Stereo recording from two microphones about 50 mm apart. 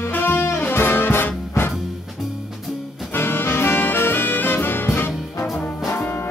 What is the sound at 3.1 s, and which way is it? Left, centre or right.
Music, left.